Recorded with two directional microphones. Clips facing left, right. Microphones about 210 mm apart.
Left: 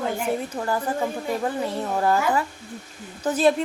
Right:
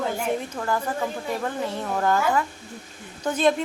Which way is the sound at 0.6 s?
15° left (ahead or behind).